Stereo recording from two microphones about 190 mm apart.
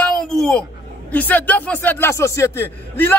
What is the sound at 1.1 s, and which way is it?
A man's voice, 10° left (ahead or behind).